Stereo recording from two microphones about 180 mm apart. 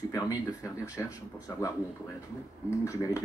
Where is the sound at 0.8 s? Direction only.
20° left (ahead or behind).